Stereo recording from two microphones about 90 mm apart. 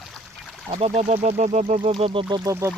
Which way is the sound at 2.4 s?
35° right (ahead or behind).